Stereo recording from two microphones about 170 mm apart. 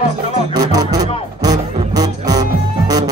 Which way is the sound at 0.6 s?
20° right (ahead or behind).